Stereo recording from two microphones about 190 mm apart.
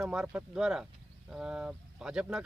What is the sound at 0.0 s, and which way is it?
Speech, 5° right (ahead or behind).